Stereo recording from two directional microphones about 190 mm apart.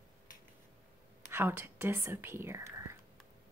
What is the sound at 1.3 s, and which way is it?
Speech, 10° right (ahead or behind).